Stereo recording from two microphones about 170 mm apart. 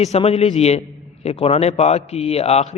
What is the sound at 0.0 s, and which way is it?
A man's voice, 40° left (ahead or behind).